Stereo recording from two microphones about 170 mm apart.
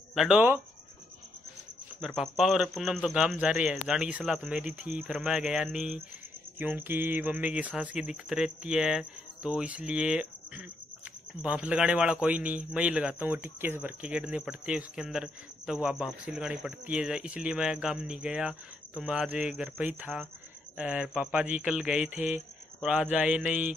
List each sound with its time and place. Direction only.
0.1 s a man's voice: 5° right (ahead or behind)
2.0 s a man's voice: centre (ahead or behind)